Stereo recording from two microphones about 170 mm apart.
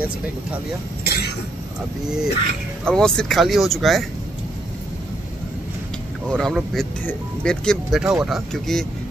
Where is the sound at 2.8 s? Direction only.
5° left (ahead or behind).